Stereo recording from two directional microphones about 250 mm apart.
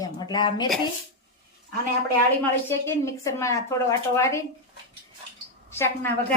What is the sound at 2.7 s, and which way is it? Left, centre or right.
A woman's voice, centre.